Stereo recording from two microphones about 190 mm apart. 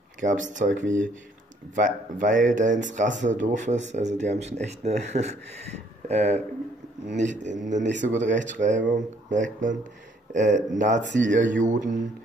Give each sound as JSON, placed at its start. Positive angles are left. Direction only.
{"t": 0.2, "sound": "speech", "side_deg": -40}
{"t": 7.9, "sound": "speech", "side_deg": -70}
{"t": 8.2, "sound": "speech", "side_deg": -40}